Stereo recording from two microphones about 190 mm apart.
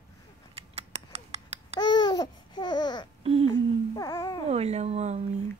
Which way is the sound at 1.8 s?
20° left (ahead or behind).